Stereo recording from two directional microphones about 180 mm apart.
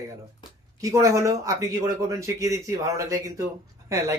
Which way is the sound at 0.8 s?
15° right (ahead or behind).